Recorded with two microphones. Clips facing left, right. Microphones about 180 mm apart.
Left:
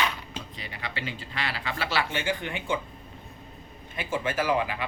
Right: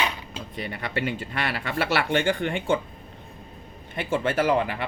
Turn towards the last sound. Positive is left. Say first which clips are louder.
# right 4 dB
turn(degrees=-60)  # may be behind; listen again after turning